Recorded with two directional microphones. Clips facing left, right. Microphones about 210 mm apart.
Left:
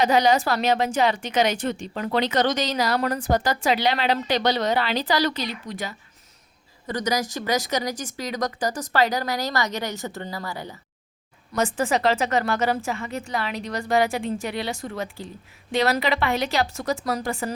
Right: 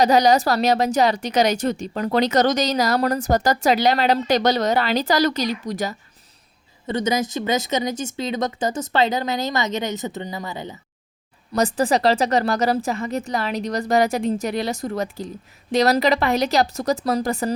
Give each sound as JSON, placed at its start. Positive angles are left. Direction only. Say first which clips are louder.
{"t": 0.0, "sound": "speech", "louder": "right 3 dB", "side_deg": -40}
{"t": 6.8, "sound": "speech", "louder": "right 4 dB", "side_deg": -25}
{"t": 11.5, "sound": "speech", "louder": "right 4 dB", "side_deg": -35}